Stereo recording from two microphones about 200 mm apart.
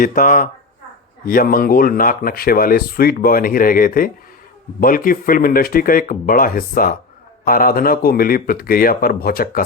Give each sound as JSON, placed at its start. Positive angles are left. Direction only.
{"t": 0.0, "sound": "speech", "side_deg": 45}